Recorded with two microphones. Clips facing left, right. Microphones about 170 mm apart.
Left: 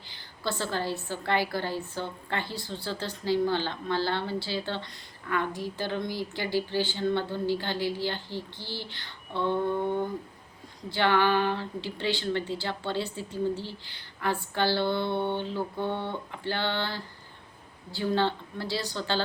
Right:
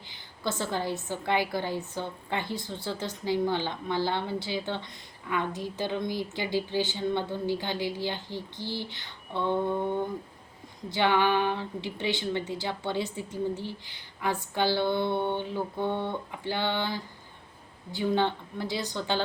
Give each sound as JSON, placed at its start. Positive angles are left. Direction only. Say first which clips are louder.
{"t": 0.4, "sound": "a woman's voice", "louder": "even", "side_deg": -20}
{"t": 10.8, "sound": "a woman's voice", "louder": "even", "side_deg": -20}